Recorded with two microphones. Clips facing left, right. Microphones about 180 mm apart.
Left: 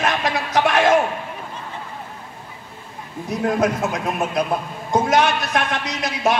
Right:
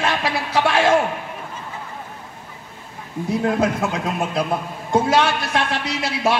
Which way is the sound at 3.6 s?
30° right (ahead or behind).